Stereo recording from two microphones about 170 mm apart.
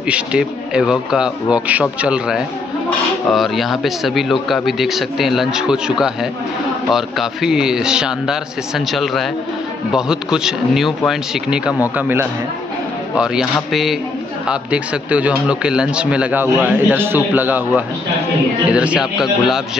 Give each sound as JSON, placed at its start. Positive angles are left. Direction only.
{"t": 0.0, "sound": "a man's voice", "side_deg": -5}